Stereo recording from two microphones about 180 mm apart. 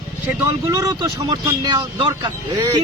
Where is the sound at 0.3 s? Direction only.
20° right (ahead or behind).